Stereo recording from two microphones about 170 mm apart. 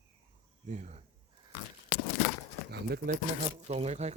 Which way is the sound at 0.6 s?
45° right (ahead or behind).